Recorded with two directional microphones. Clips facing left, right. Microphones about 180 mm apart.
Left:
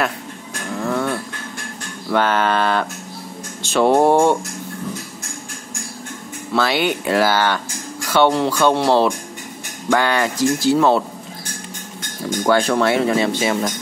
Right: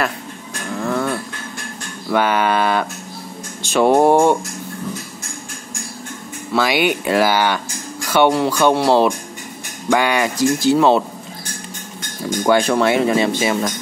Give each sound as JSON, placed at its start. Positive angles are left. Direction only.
{"t": 0.7, "sound": "a sound", "side_deg": 0}
{"t": 2.0, "sound": "speech", "side_deg": -10}
{"t": 3.6, "sound": "music", "side_deg": -15}
{"t": 6.5, "sound": "speech", "side_deg": -15}
{"t": 12.4, "sound": "speech", "side_deg": -15}